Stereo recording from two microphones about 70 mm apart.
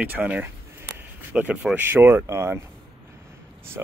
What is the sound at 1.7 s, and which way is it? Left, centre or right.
Speech, right.